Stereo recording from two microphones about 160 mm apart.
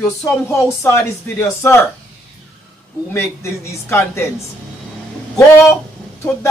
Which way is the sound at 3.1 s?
15° left (ahead or behind).